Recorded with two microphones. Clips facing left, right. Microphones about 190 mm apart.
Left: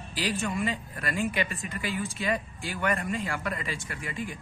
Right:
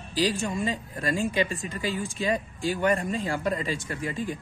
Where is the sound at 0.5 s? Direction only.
35° right (ahead or behind).